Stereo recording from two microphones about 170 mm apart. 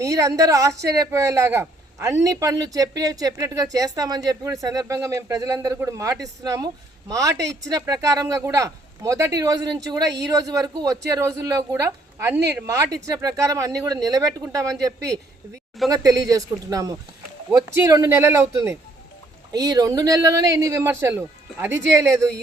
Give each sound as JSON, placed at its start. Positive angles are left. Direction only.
{"t": 0.0, "sound": "speech", "side_deg": -20}